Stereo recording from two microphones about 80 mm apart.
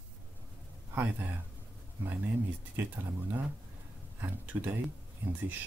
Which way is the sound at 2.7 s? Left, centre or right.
Right.